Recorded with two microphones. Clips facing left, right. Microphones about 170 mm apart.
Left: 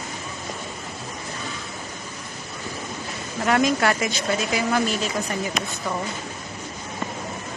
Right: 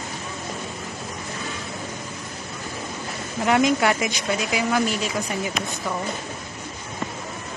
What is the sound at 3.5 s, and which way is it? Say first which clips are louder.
Speech: right 1 dB; 15° right (ahead or behind).